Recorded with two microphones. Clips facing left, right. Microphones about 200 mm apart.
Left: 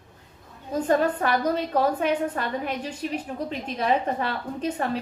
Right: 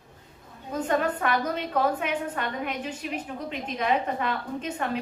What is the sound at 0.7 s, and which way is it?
A woman's voice, 35° left (ahead or behind).